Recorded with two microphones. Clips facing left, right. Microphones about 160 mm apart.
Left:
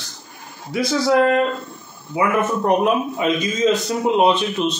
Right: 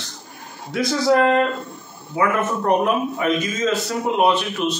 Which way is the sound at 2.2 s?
15° left (ahead or behind).